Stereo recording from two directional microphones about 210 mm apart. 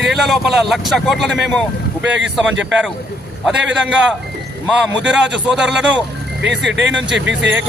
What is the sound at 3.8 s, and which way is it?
Speech, 5° right (ahead or behind).